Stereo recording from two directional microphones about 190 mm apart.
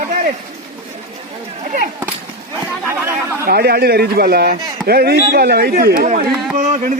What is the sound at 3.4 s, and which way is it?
A man's voice, 55° right (ahead or behind).